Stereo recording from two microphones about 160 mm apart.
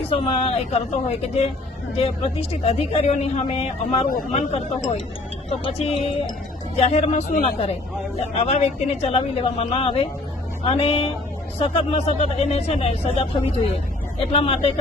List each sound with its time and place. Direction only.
0.1 s speech: 35° left (ahead or behind)
5.5 s speech: 40° left (ahead or behind)